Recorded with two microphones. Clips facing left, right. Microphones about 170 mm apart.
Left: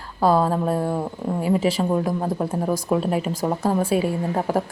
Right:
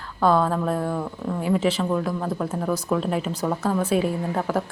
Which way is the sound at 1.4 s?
10° left (ahead or behind).